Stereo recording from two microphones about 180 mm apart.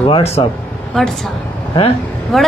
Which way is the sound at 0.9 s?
Centre (ahead or behind).